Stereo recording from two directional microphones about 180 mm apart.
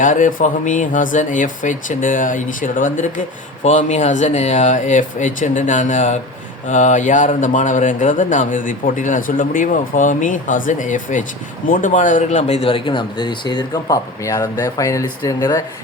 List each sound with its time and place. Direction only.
0.0 s speech: 45° left (ahead or behind); by 15.6 s 20° left (ahead or behind)